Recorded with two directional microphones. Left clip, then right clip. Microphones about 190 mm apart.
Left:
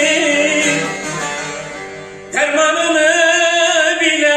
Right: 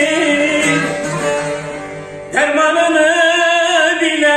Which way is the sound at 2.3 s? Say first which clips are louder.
Right 1 dB; 15° left (ahead or behind).